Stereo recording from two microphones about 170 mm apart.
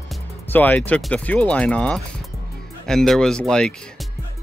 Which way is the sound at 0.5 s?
10° left (ahead or behind).